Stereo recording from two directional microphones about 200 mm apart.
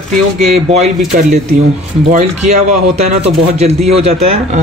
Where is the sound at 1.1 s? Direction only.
40° right (ahead or behind).